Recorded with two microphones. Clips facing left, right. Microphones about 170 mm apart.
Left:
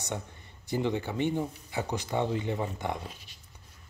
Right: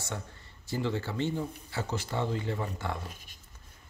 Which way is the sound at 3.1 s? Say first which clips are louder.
Even; 50° right (ahead or behind).